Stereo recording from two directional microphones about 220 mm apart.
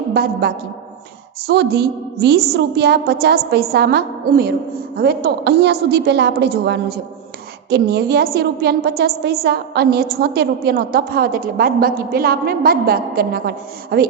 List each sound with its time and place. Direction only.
0.1 s a woman's voice: 45° right (ahead or behind)